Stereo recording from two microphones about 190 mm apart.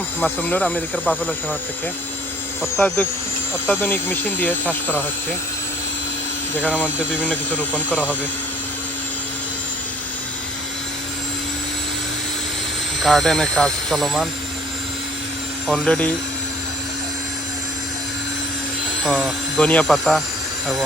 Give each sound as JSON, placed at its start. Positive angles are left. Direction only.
{"t": 0.2, "sound": "speech", "side_deg": 10}
{"t": 2.7, "sound": "speech", "side_deg": 5}
{"t": 6.6, "sound": "speech", "side_deg": 10}
{"t": 13.0, "sound": "speech", "side_deg": 0}
{"t": 15.6, "sound": "speech", "side_deg": 0}
{"t": 19.0, "sound": "speech", "side_deg": 0}